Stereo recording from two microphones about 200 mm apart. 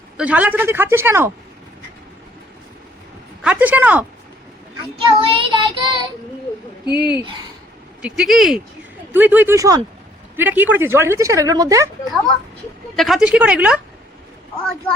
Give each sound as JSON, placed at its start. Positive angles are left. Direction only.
{"t": 0.2, "sound": "a woman's voice", "side_deg": -5}
{"t": 3.4, "sound": "a woman's voice", "side_deg": -10}
{"t": 4.9, "sound": "child singing", "side_deg": -25}
{"t": 6.8, "sound": "speech", "side_deg": 20}
{"t": 8.0, "sound": "a woman's voice", "side_deg": -5}
{"t": 13.0, "sound": "a woman's voice", "side_deg": 0}